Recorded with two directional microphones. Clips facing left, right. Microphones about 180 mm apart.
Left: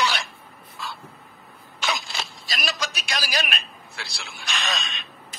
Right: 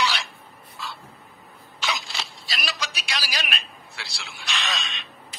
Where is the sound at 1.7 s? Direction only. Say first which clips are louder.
Left 2 dB; 50° left (ahead or behind).